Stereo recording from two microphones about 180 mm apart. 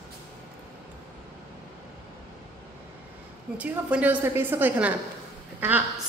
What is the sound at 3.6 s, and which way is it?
A woman's voice, 5° right (ahead or behind).